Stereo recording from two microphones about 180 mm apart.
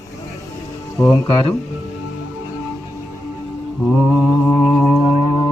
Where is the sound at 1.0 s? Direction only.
20° left (ahead or behind).